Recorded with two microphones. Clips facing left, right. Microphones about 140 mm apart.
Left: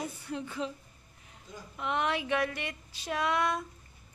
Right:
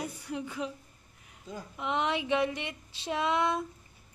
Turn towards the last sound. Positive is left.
turn(degrees=-20)  # may be behind; listen again after turning